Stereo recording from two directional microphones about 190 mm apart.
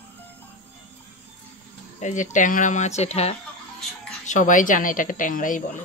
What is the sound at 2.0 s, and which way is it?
Speech, 40° left (ahead or behind).